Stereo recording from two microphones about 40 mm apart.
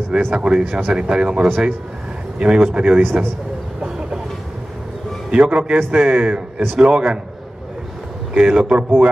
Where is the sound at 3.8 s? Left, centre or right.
Right.